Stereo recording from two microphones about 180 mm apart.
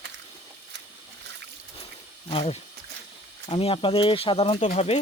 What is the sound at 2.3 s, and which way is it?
Speech, 30° left (ahead or behind).